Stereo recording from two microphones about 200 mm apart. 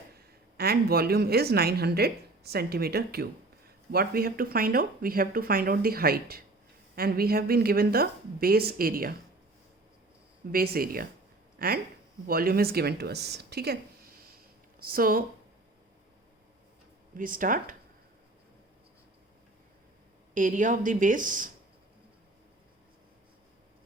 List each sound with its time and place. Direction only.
0.2 s speech: 50° right (ahead or behind)
10.5 s speech: 50° right (ahead or behind)
14.8 s speech: 45° right (ahead or behind)
17.2 s speech: 45° right (ahead or behind)
20.3 s speech: 40° right (ahead or behind)